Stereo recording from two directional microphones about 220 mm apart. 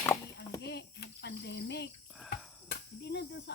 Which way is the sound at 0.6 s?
50° left (ahead or behind).